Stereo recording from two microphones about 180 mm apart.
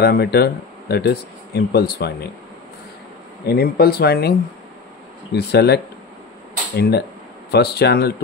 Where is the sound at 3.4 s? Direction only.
60° left (ahead or behind).